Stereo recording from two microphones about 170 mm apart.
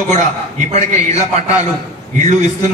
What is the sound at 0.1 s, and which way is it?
A man's voice, 45° right (ahead or behind).